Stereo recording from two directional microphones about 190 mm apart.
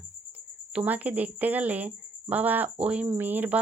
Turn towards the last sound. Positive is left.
turn(degrees=-10)  # may be behind; listen again after turning